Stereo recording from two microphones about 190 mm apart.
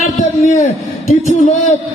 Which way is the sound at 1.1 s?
40° left (ahead or behind).